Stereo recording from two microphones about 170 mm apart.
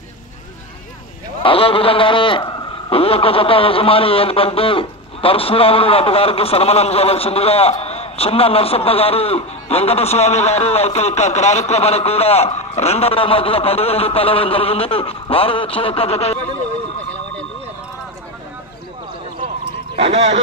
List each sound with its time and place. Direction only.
1.4 s a man's voice: 30° left (ahead or behind)
20.0 s speech: 40° right (ahead or behind)